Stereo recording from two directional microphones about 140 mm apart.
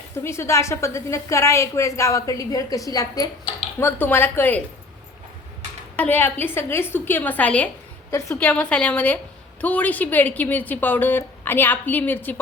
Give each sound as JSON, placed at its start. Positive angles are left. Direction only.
{"t": 0.2, "sound": "a woman's voice", "side_deg": 20}
{"t": 3.8, "sound": "a woman's voice", "side_deg": 15}
{"t": 6.0, "sound": "a woman's voice", "side_deg": 15}